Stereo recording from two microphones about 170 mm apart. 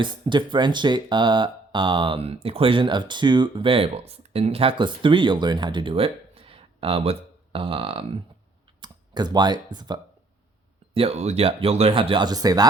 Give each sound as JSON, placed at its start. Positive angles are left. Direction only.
{"t": 0.0, "sound": "speech", "side_deg": -25}
{"t": 10.9, "sound": "speech", "side_deg": -35}